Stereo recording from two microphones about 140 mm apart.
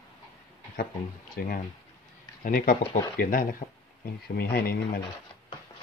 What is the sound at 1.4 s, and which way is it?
Speech, 90° left.